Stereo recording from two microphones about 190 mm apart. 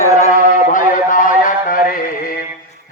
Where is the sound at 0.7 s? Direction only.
45° left (ahead or behind).